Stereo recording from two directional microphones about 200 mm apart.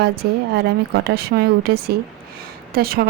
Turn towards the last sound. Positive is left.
turn(degrees=-50)  # may be behind; listen again after turning